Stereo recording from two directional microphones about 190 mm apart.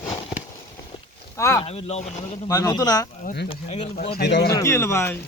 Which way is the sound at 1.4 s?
15° left (ahead or behind).